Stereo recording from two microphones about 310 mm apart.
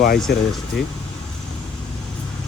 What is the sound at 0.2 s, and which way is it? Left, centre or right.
Speech, centre.